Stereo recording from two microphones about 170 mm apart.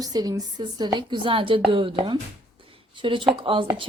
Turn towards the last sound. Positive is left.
turn(degrees=-30)  # may be behind; listen again after turning